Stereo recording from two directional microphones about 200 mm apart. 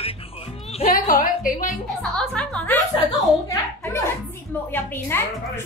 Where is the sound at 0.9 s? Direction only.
45° left (ahead or behind).